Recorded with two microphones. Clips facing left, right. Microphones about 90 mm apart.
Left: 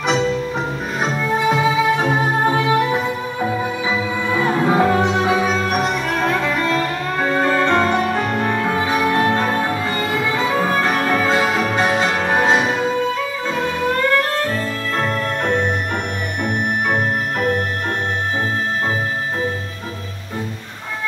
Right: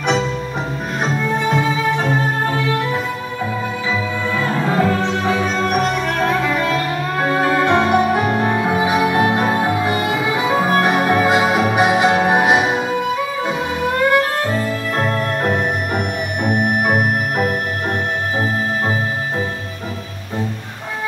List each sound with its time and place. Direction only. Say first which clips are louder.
1.0 s music: left 1 dB; 5° left (ahead or behind); by 13.6 s 15° right (ahead or behind)
15.0 s music: right 1 dB; 15° right (ahead or behind)